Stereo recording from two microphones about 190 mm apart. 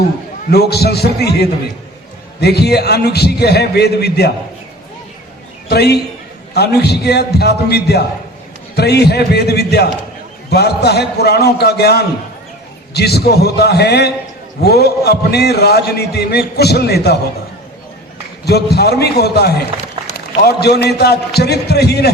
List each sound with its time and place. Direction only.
0.5 s a man's voice: 60° left (ahead or behind)
5.6 s a man's voice: 60° left (ahead or behind)
18.4 s a man's voice: 60° left (ahead or behind)